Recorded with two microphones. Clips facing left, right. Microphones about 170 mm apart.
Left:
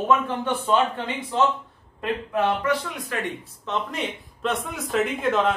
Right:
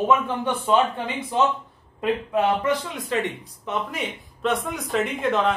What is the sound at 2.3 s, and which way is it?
Speech, 20° right (ahead or behind).